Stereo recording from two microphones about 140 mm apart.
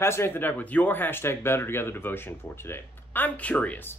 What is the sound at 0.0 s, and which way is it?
Speech, 20° left (ahead or behind).